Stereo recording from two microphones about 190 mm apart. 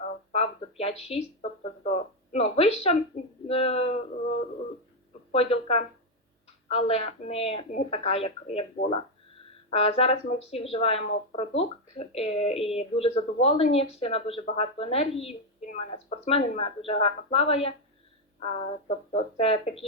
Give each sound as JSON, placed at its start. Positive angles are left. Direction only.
{"t": 0.0, "sound": "a sound", "side_deg": 35}
{"t": 3.4, "sound": "speech", "side_deg": 30}
{"t": 5.3, "sound": "speech", "side_deg": 30}